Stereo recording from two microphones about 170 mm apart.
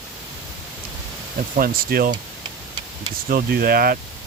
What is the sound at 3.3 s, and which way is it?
Speech, 60° right (ahead or behind).